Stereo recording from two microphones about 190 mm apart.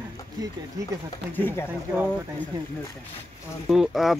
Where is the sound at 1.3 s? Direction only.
10° left (ahead or behind).